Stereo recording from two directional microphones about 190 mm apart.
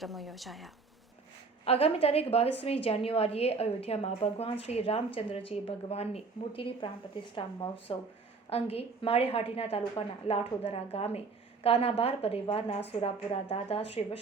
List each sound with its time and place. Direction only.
0.0 s speech: centre (ahead or behind)
1.6 s a woman's voice: 30° left (ahead or behind)